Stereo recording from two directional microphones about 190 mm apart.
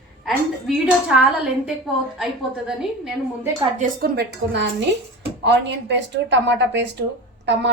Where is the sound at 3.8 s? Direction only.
50° right (ahead or behind).